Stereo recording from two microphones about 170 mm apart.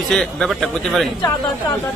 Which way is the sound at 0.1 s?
Centre (ahead or behind).